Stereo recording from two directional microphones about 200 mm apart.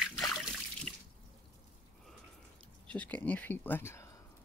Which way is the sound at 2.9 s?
5° left (ahead or behind).